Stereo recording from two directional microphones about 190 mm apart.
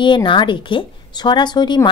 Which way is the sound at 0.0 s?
25° left (ahead or behind).